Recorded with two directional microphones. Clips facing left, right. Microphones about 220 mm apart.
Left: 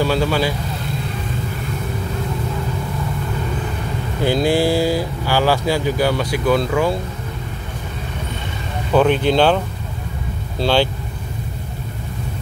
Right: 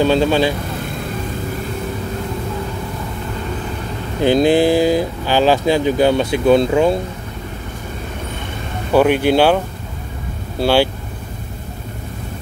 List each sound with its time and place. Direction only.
0.0 s speech: 20° right (ahead or behind)
4.2 s speech: 20° right (ahead or behind)
8.9 s speech: 10° right (ahead or behind)
10.6 s speech: 10° right (ahead or behind)